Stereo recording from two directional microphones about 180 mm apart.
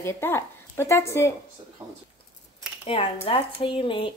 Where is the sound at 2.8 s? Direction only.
30° left (ahead or behind).